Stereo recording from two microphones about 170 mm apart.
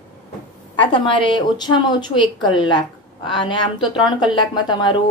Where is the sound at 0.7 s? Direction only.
30° left (ahead or behind).